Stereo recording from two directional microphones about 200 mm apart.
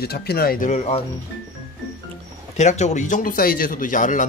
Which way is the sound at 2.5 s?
35° left (ahead or behind).